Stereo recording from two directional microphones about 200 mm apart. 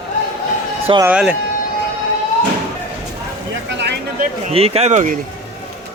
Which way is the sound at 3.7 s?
60° right (ahead or behind).